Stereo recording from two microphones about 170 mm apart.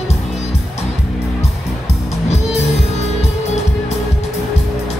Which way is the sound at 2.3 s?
40° left (ahead or behind).